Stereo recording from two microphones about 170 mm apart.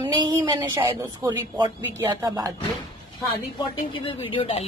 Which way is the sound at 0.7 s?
20° right (ahead or behind).